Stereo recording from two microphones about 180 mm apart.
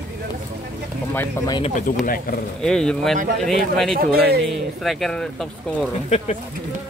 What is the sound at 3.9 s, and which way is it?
Speech, 60° right (ahead or behind).